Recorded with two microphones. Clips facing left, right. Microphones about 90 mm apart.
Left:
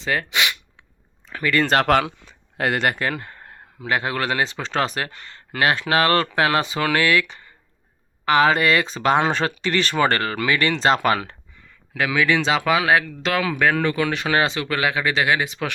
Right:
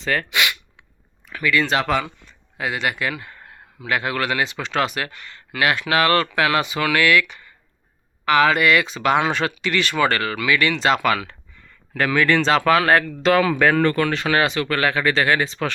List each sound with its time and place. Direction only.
0.0 s a sound: 20° left (ahead or behind)
1.3 s speech: 40° left (ahead or behind)
11.9 s speech: 5° left (ahead or behind)